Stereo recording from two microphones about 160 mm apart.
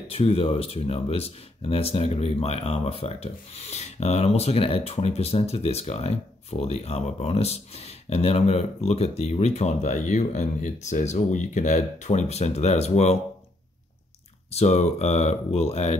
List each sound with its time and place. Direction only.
0.1 s speech: 35° left (ahead or behind)
14.5 s speech: 40° left (ahead or behind)